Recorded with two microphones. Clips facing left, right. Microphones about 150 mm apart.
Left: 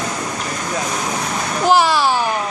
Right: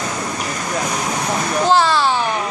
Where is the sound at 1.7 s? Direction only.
10° left (ahead or behind).